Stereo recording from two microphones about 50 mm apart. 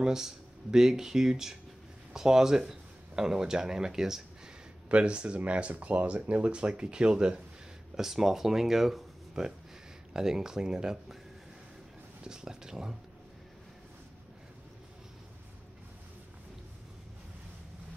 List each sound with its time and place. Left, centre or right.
0.0 s speech: centre
4.8 s speech: right
12.2 s speech: centre